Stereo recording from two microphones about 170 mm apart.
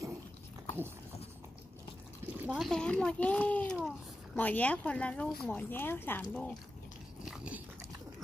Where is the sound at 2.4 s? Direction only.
10° right (ahead or behind).